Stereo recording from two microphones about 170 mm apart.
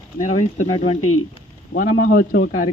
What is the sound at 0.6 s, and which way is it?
Speech, 35° left (ahead or behind).